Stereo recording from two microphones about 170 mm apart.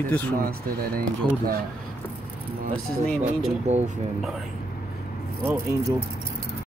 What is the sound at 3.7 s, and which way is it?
Speech, 40° right (ahead or behind).